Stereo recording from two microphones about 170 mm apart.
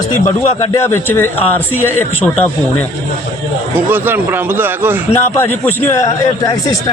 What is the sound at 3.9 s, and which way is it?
Speech, 10° right (ahead or behind).